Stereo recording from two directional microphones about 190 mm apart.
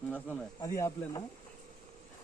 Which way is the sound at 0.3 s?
15° left (ahead or behind).